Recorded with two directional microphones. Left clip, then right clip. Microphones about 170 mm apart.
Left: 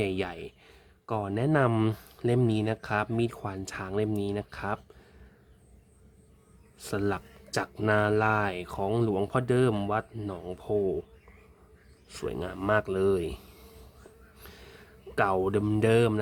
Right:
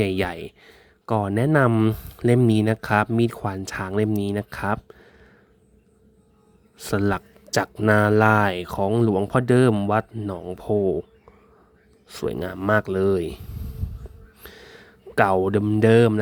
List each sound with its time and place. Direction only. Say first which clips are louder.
0.0 s speech: right 7 dB; 40° right (ahead or behind)
1.7 s speech: right 6 dB; 25° right (ahead or behind)
2.5 s speech: right 8 dB; 45° right (ahead or behind)
6.7 s a man's voice: right 7 dB; 45° right (ahead or behind)
10.1 s speech: right 6 dB; 25° right (ahead or behind)
10.6 s speech: right 6 dB; 40° right (ahead or behind)
12.0 s speech: right 7 dB; 40° right (ahead or behind)
13.4 s a sound: right 7 dB; 25° right (ahead or behind)
14.4 s a sound: right 7 dB; 40° right (ahead or behind)
15.9 s speech: right 8 dB; 35° right (ahead or behind)